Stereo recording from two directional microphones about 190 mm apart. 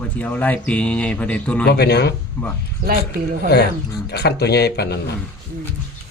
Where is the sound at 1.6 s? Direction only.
60° left (ahead or behind).